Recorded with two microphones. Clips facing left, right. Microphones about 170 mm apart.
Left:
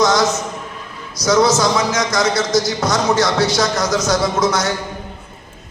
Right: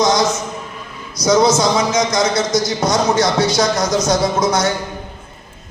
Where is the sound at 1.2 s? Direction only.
20° right (ahead or behind).